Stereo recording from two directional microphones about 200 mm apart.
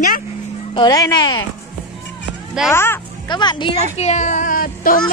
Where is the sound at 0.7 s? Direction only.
20° left (ahead or behind).